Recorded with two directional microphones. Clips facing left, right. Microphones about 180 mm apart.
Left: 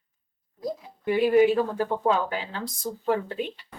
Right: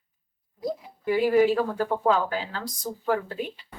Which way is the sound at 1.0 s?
20° left (ahead or behind).